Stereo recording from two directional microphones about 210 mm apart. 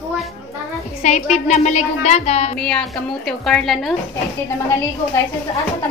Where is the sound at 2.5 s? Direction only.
5° left (ahead or behind).